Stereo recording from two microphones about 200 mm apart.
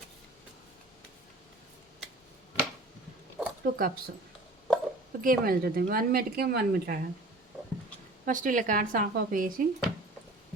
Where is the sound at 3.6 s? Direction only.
45° right (ahead or behind).